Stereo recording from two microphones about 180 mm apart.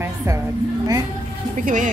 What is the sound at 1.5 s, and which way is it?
Speech, 45° right (ahead or behind).